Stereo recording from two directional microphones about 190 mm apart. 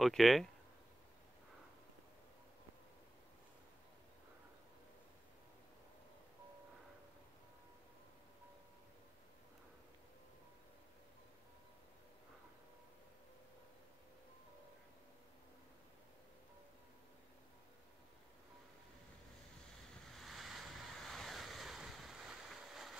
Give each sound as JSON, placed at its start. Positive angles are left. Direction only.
{"t": 0.0, "sound": "speech", "side_deg": 0}
{"t": 20.1, "sound": "waves", "side_deg": 0}